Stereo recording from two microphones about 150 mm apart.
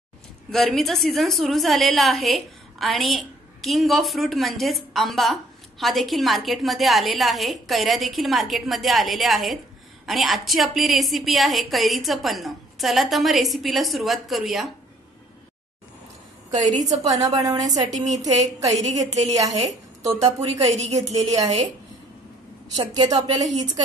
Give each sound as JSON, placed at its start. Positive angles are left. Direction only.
{"t": 0.5, "sound": "a woman's voice", "side_deg": 0}
{"t": 17.0, "sound": "a woman's voice", "side_deg": -25}
{"t": 17.8, "sound": "a woman's voice", "side_deg": -50}
{"t": 19.3, "sound": "a woman's voice", "side_deg": -20}
{"t": 20.7, "sound": "a woman's voice", "side_deg": -50}
{"t": 22.8, "sound": "a woman's voice", "side_deg": -25}